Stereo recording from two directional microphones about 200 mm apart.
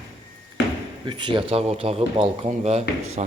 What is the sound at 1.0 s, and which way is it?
Speech, 25° right (ahead or behind).